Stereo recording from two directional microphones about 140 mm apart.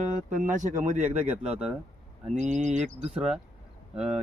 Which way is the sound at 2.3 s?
55° right (ahead or behind).